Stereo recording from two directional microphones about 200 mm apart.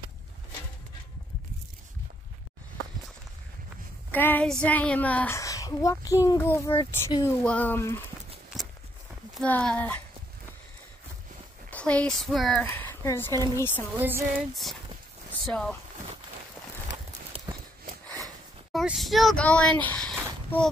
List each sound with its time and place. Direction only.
4.1 s speech: 10° left (ahead or behind)
7.4 s speech: 10° left (ahead or behind)
9.3 s speech: 5° left (ahead or behind)
11.7 s speech: 5° left (ahead or behind)
13.9 s a sound: 10° right (ahead or behind)
15.4 s speech: 5° left (ahead or behind)
18.7 s speech: centre (ahead or behind)